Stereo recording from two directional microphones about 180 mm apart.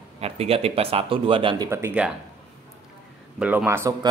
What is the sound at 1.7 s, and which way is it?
Speech, 15° right (ahead or behind).